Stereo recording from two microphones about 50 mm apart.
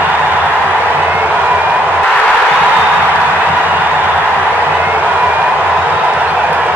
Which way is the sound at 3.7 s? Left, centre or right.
Right.